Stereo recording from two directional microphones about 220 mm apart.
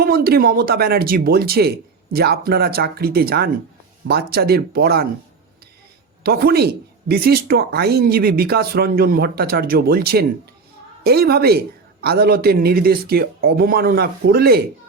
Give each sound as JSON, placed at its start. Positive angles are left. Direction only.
{"t": 0.0, "sound": "speech", "side_deg": -45}
{"t": 6.2, "sound": "speech", "side_deg": -45}